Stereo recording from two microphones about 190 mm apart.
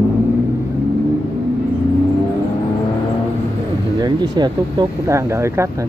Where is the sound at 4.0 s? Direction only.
20° right (ahead or behind).